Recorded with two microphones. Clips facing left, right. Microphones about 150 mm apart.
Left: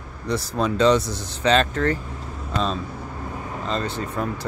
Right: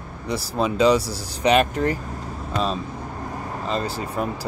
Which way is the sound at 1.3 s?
15° right (ahead or behind).